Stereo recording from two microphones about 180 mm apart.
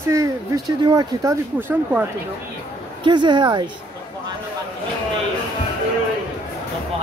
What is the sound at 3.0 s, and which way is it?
Speech, 25° right (ahead or behind).